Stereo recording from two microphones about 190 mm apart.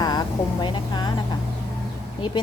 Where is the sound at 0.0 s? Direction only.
20° left (ahead or behind).